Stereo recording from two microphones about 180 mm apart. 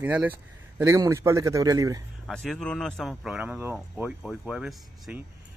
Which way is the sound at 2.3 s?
5° left (ahead or behind).